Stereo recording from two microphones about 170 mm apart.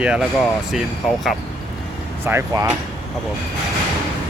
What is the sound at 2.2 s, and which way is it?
Speech, 15° right (ahead or behind).